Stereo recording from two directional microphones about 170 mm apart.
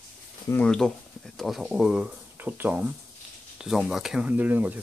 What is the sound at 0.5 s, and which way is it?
Speech, 5° left (ahead or behind).